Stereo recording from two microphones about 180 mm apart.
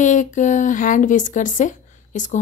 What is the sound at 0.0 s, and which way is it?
Speech, 45° left (ahead or behind).